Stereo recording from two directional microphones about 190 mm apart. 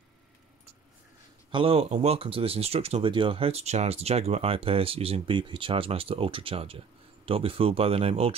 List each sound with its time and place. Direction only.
1.5 s speech: 30° right (ahead or behind)